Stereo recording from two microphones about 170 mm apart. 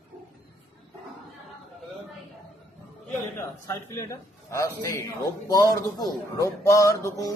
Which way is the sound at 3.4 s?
15° left (ahead or behind).